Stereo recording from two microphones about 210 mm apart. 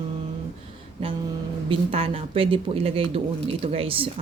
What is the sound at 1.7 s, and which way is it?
Speech, 25° right (ahead or behind).